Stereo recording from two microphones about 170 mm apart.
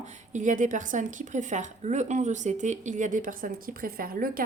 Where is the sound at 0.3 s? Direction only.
50° right (ahead or behind).